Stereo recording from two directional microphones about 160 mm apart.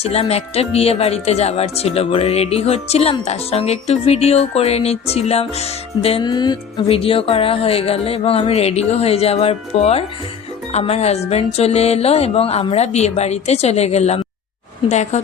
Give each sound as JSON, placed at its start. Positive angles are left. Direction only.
{"t": 0.0, "sound": "speech", "side_deg": 40}
{"t": 6.2, "sound": "a woman's voice", "side_deg": 25}